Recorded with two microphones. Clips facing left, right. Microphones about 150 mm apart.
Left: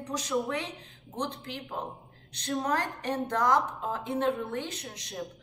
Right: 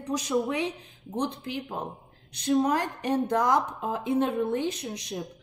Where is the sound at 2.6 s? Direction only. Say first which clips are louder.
Right 3 dB; 10° right (ahead or behind).